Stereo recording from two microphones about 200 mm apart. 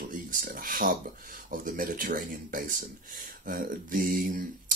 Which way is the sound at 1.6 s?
45° right (ahead or behind).